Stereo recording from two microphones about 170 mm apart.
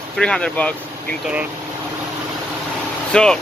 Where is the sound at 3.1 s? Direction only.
5° left (ahead or behind).